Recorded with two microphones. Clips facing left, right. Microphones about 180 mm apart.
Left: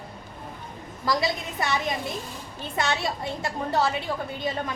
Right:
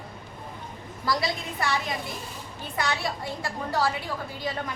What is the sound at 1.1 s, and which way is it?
Speech, 20° left (ahead or behind).